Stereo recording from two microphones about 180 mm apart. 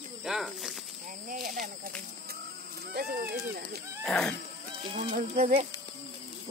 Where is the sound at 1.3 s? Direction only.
50° right (ahead or behind).